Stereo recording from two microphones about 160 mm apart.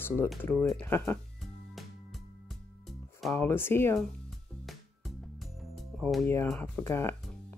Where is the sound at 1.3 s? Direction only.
Centre (ahead or behind).